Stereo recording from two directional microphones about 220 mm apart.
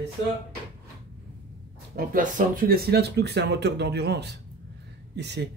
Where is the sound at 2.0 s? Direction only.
35° right (ahead or behind).